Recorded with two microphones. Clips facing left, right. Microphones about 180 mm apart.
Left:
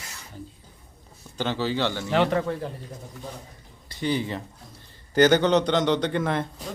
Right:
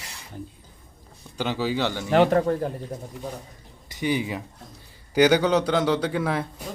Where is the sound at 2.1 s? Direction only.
45° right (ahead or behind).